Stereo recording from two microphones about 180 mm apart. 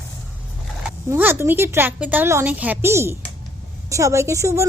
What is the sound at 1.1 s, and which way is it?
A woman's voice, 10° right (ahead or behind).